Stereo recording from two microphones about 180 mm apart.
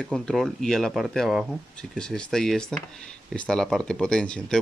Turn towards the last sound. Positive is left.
turn(degrees=5)  # may be behind; listen again after turning